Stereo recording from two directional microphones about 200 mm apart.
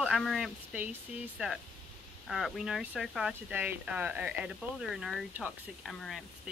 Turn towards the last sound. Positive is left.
turn(degrees=0)  # may be behind; listen again after turning